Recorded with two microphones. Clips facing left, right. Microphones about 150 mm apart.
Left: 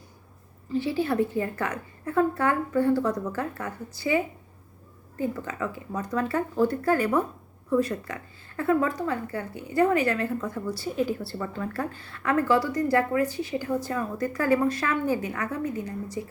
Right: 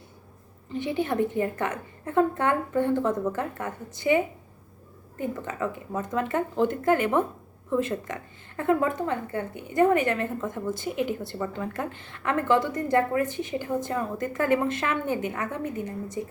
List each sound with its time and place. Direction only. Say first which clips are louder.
0.8 s a woman's voice: left 1 dB; 20° right (ahead or behind)